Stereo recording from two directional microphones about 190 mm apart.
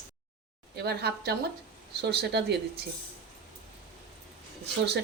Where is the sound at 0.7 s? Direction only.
60° right (ahead or behind).